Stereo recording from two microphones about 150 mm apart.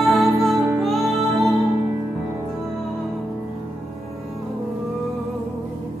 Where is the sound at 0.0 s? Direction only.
Centre (ahead or behind).